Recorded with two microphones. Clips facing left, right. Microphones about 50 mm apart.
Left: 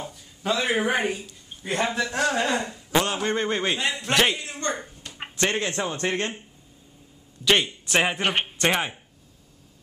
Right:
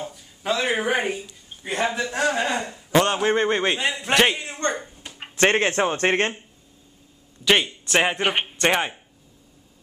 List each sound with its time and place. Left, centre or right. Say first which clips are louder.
0.0 s a sound: right 1 dB; centre
1.0 s a man's voice: even; centre
4.4 s a man's voice: right 3 dB; right
5.1 s a sound: right 1 dB; centre
5.4 s a man's voice: right 6 dB; right
7.4 s a man's voice: right 2 dB; centre